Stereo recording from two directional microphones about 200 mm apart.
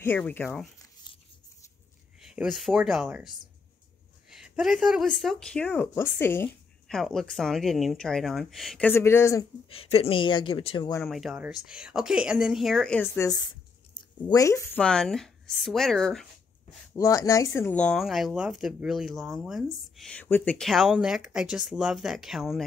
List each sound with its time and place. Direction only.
0.0 s speech: 10° left (ahead or behind)
2.2 s speech: 5° right (ahead or behind); by 9.5 s 15° left (ahead or behind)
9.7 s speech: 30° left (ahead or behind)
11.1 s speech: centre (ahead or behind); by 14.8 s 15° left (ahead or behind)
14.8 s speech: 5° left (ahead or behind)
16.9 s speech: 15° left (ahead or behind); by 22.7 s centre (ahead or behind)